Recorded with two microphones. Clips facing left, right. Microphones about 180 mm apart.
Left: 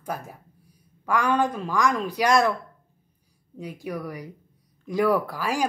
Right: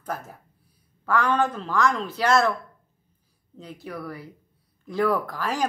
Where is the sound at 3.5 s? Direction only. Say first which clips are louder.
Left 4 dB; 15° left (ahead or behind).